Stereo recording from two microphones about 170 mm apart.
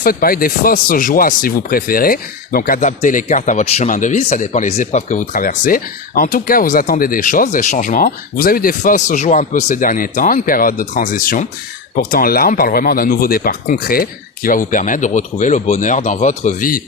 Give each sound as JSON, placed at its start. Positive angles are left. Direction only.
{"t": 0.0, "sound": "speech", "side_deg": 60}